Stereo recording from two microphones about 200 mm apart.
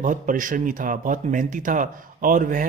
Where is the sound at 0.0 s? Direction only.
40° right (ahead or behind).